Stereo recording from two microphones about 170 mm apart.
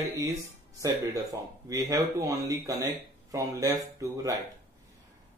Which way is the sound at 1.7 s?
20° right (ahead or behind).